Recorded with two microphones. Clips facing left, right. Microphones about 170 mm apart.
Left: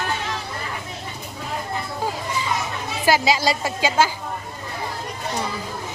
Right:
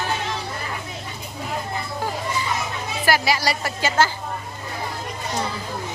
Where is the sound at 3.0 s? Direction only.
20° left (ahead or behind).